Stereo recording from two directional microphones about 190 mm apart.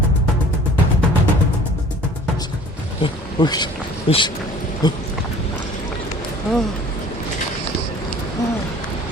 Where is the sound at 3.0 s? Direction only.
25° left (ahead or behind).